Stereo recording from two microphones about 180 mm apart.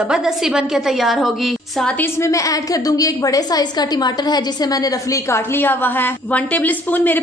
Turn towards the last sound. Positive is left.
turn(degrees=10)  # may be behind; listen again after turning